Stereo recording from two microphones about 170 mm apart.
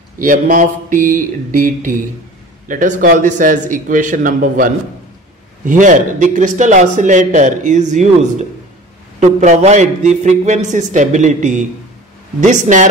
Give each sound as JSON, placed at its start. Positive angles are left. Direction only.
{"t": 0.2, "sound": "a man's voice", "side_deg": -50}